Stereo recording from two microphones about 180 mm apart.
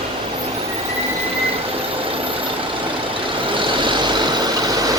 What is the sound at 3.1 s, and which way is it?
Vehicle, 25° right (ahead or behind).